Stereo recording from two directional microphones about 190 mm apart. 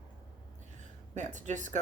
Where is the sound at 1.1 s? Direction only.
40° right (ahead or behind).